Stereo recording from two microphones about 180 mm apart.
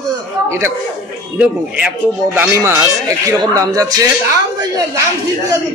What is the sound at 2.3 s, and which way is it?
A man's voice, 15° right (ahead or behind).